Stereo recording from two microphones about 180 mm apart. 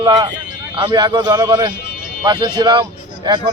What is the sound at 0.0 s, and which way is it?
A man's voice, 25° right (ahead or behind).